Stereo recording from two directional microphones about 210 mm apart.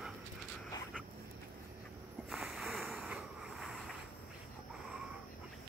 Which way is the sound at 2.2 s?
Centre (ahead or behind).